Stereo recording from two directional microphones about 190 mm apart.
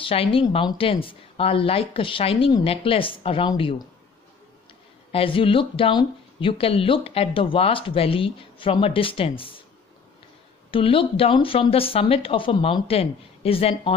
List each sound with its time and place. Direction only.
0.0 s speech: 30° left (ahead or behind)
5.1 s speech: 30° left (ahead or behind)
10.7 s speech: 30° left (ahead or behind)